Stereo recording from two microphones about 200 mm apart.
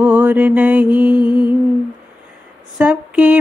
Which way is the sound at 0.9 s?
20° left (ahead or behind).